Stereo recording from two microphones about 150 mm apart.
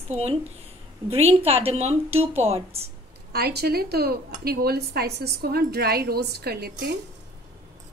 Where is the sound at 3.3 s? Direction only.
90° right.